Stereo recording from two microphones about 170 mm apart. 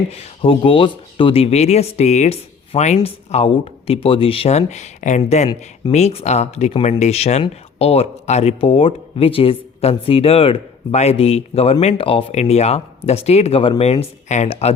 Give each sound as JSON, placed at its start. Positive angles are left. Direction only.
{"t": 0.2, "sound": "speech", "side_deg": 30}
{"t": 6.7, "sound": "speech", "side_deg": 30}
{"t": 7.0, "sound": "speech", "side_deg": 40}